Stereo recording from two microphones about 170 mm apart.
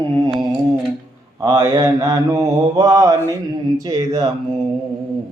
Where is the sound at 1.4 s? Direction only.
20° right (ahead or behind).